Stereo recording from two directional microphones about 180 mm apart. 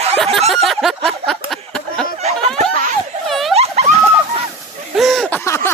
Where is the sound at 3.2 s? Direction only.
Centre (ahead or behind).